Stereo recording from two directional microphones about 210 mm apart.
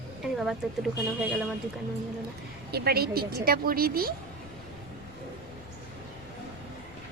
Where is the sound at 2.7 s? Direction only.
50° right (ahead or behind).